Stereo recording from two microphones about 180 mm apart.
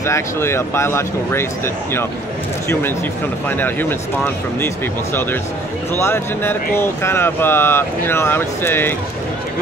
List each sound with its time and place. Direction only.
0.0 s speech: 15° left (ahead or behind)
3.4 s speech: 10° left (ahead or behind)
5.9 s speech: 15° left (ahead or behind)